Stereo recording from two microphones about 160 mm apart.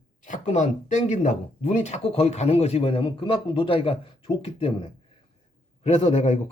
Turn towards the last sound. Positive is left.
turn(degrees=40)  # may be behind; listen again after turning